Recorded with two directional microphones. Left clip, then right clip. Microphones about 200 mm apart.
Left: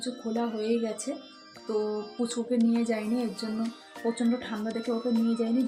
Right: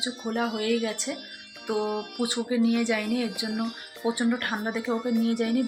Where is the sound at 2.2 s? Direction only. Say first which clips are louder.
Right 2 dB; 10° left (ahead or behind).